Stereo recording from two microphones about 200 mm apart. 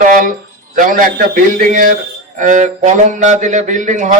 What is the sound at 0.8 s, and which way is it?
A man's voice, 40° right (ahead or behind).